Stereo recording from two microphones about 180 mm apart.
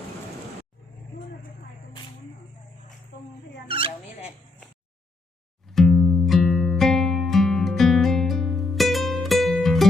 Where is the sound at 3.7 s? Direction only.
30° right (ahead or behind).